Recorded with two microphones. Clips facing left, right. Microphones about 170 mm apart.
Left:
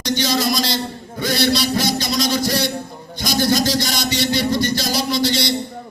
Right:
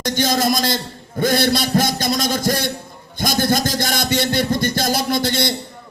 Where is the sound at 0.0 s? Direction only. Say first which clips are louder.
Right 1 dB; 50° right (ahead or behind).